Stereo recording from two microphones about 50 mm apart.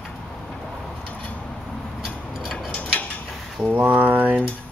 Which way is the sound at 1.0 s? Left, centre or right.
Left.